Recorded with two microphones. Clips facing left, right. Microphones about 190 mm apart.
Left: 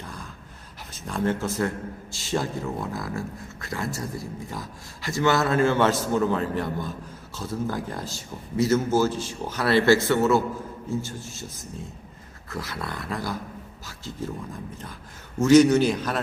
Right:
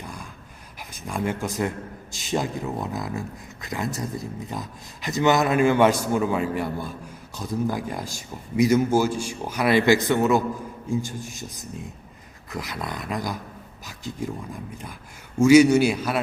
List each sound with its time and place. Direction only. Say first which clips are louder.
0.0 s gasp: right 1 dB; 10° right (ahead or behind)
0.9 s a man's voice: left 1 dB; 10° right (ahead or behind)